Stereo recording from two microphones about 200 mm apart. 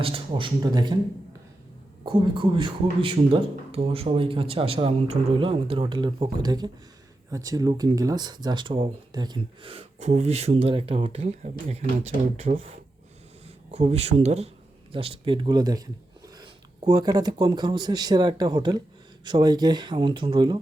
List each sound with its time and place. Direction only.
0.0 s speech: 25° right (ahead or behind)
2.0 s speech: 25° right (ahead or behind)
16.9 s speech: 20° right (ahead or behind)